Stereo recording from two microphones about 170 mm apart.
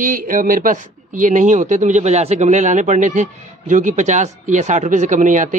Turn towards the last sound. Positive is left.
turn(degrees=-50)  # may be behind; listen again after turning